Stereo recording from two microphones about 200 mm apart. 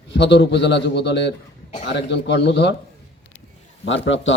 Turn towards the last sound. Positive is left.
turn(degrees=65)  # may be behind; listen again after turning